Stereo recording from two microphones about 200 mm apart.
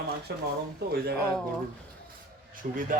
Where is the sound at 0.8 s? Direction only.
55° right (ahead or behind).